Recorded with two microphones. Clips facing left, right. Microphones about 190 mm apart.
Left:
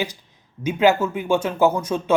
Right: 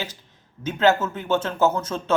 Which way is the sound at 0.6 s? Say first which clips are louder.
Left 2 dB; 10° left (ahead or behind).